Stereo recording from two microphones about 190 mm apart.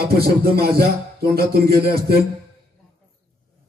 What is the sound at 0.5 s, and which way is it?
A man's voice, 55° right (ahead or behind).